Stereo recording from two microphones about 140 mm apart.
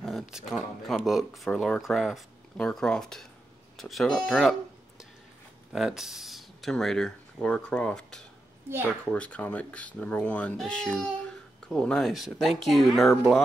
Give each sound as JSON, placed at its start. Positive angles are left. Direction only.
{"t": 0.0, "sound": "speech", "side_deg": 0}
{"t": 8.6, "sound": "a woman's voice", "side_deg": -15}
{"t": 9.0, "sound": "speech", "side_deg": 10}